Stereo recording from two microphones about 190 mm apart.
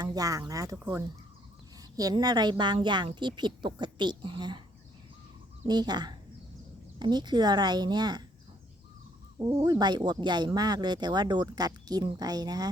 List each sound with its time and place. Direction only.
0.0 s speech: 20° right (ahead or behind)
2.0 s a woman's voice: 20° right (ahead or behind)
5.6 s a woman's voice: 20° right (ahead or behind)
9.4 s a woman's voice: 25° right (ahead or behind)